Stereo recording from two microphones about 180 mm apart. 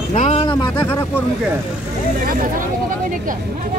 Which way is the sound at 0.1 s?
40° left (ahead or behind).